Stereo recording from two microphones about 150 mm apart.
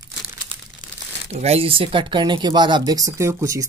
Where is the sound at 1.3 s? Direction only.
40° right (ahead or behind).